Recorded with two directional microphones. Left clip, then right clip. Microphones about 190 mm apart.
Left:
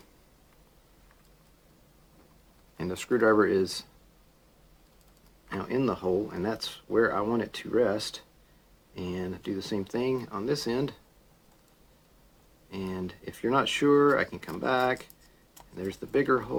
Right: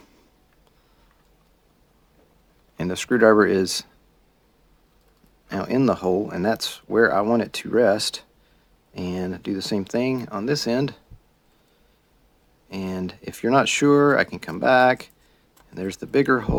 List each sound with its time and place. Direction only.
2.7 s speech: 50° right (ahead or behind)
5.5 s speech: 50° right (ahead or behind)
12.7 s speech: 50° right (ahead or behind)